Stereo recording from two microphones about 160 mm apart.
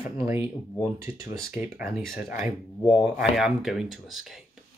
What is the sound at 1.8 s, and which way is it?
Speech, centre (ahead or behind).